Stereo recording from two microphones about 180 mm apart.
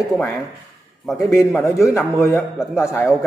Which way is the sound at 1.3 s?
15° left (ahead or behind).